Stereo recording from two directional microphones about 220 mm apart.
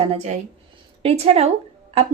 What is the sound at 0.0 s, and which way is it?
Speech, 30° right (ahead or behind).